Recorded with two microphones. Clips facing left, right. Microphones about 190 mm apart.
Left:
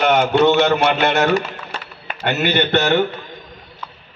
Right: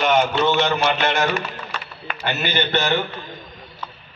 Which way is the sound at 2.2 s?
70° left (ahead or behind).